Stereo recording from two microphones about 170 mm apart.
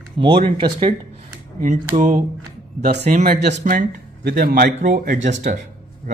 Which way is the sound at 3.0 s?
50° right (ahead or behind).